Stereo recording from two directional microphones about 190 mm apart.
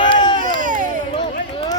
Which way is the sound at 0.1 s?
25° left (ahead or behind).